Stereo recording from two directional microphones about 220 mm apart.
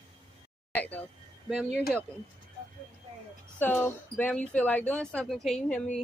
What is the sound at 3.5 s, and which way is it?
Speech, 10° left (ahead or behind).